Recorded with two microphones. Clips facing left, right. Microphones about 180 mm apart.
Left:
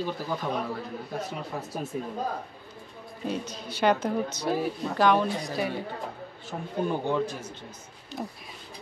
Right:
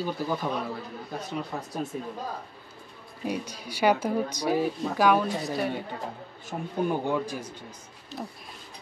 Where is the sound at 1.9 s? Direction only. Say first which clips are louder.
Left 2 dB; 5° left (ahead or behind).